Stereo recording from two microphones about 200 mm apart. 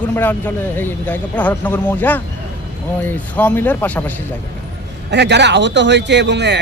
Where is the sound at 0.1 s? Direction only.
10° left (ahead or behind).